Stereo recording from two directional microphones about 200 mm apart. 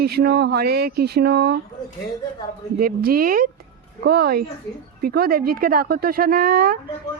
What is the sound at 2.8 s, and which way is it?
A woman's voice, 50° right (ahead or behind).